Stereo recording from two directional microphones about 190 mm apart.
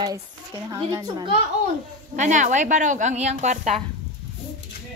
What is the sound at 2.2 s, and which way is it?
Speech, 40° right (ahead or behind).